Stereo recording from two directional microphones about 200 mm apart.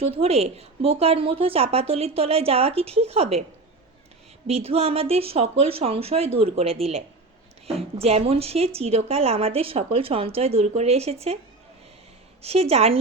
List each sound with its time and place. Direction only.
0.0 s a woman's voice: 30° right (ahead or behind)
4.4 s a woman's voice: 30° right (ahead or behind)
12.4 s a woman's voice: 30° right (ahead or behind)